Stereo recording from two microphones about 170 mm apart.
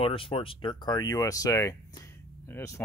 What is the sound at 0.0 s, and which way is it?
Speech, 35° left (ahead or behind).